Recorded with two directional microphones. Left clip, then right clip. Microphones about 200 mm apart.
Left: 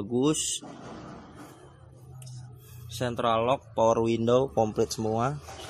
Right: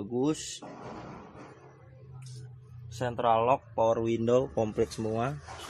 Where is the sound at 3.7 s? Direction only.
30° left (ahead or behind).